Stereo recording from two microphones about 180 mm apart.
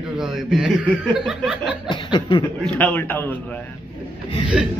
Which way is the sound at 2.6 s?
5° left (ahead or behind).